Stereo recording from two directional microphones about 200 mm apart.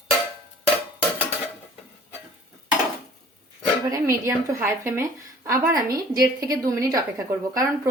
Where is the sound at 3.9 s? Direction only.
15° right (ahead or behind).